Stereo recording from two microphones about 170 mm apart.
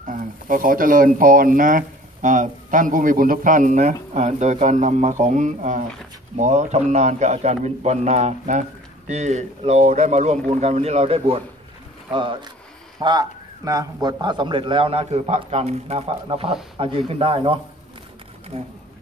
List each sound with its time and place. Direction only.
0.0 s speech: 50° right (ahead or behind); by 17.6 s 30° right (ahead or behind)